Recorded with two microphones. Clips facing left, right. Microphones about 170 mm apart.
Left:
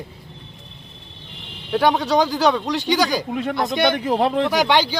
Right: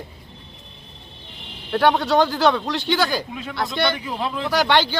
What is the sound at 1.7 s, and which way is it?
Speech, centre (ahead or behind).